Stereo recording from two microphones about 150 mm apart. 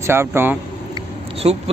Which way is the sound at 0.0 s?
15° right (ahead or behind).